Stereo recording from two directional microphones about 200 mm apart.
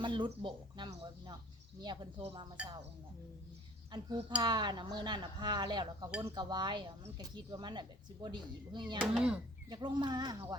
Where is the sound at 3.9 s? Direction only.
20° right (ahead or behind).